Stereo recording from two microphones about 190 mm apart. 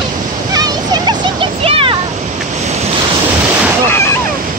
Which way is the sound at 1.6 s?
30° right (ahead or behind).